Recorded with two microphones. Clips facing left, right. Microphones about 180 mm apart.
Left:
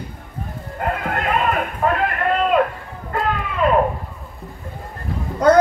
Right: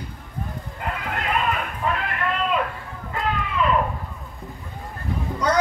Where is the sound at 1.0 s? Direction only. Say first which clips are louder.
Left 2 dB; 55° left (ahead or behind).